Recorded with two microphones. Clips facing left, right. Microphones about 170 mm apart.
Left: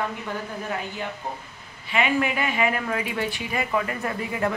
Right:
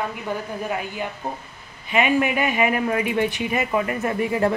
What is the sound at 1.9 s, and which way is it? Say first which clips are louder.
Speech: right 4 dB; 20° right (ahead or behind).